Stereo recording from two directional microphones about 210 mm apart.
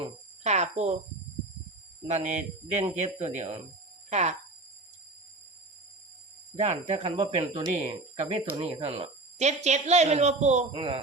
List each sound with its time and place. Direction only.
0.4 s a sound: 30° right (ahead or behind)
2.0 s speech: 30° right (ahead or behind)
6.6 s speech: 30° right (ahead or behind)